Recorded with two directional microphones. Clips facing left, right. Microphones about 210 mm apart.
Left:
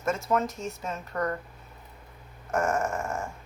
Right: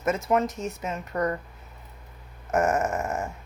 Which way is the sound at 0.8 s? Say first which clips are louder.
Right 3 dB; 15° right (ahead or behind).